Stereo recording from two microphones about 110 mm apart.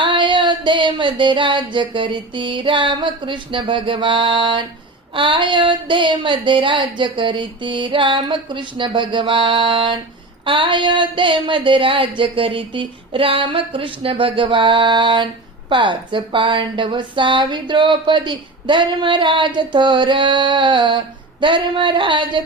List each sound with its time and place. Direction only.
0.0 s a woman's voice: 45° right (ahead or behind)